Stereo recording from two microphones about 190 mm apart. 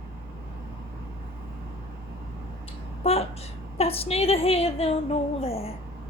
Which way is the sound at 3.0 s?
30° left (ahead or behind).